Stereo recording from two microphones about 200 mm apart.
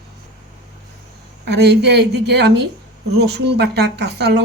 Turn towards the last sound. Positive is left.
turn(degrees=-55)  # may be behind; listen again after turning